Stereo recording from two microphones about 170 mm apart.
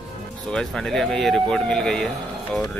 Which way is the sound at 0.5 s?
5° left (ahead or behind).